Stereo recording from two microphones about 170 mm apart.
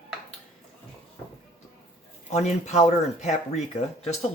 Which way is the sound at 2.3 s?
40° left (ahead or behind).